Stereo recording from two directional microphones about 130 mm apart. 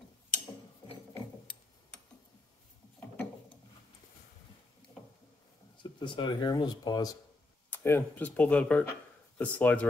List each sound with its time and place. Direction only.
1.9 s tick-tock: 10° left (ahead or behind)
5.8 s speech: 35° left (ahead or behind)
7.7 s speech: 15° left (ahead or behind)